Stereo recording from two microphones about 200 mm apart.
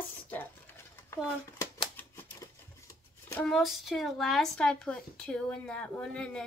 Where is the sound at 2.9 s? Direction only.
15° left (ahead or behind).